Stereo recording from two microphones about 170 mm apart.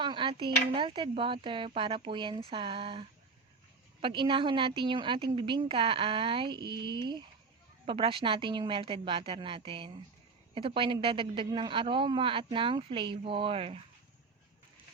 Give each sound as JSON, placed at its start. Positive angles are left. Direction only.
{"t": 0.0, "sound": "a woman's voice", "side_deg": -30}